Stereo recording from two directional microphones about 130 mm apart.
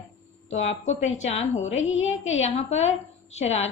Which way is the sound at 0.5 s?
60° left (ahead or behind).